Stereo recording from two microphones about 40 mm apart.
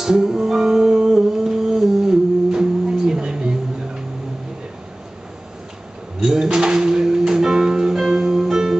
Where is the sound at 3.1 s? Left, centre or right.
Centre.